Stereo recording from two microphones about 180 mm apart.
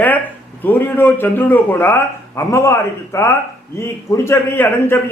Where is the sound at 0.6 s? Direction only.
10° left (ahead or behind).